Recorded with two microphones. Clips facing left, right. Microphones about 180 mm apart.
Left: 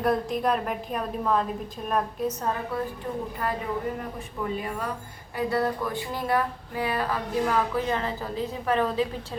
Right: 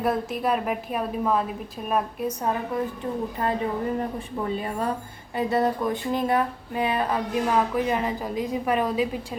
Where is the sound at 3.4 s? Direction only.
25° right (ahead or behind).